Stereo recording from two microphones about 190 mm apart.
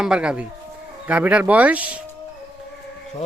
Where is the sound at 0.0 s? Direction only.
5° right (ahead or behind).